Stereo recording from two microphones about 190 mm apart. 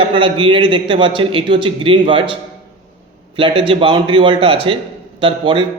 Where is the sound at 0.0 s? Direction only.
25° right (ahead or behind).